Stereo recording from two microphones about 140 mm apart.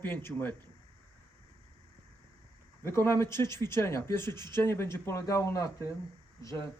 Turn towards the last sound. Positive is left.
turn(degrees=20)  # may be behind; listen again after turning